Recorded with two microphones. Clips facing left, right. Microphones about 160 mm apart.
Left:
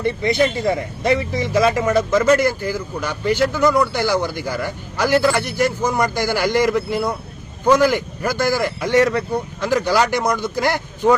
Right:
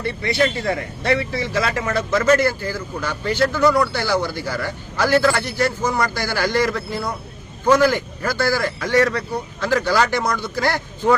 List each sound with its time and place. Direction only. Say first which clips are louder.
0.0 s speech: left 3 dB; 20° left (ahead or behind)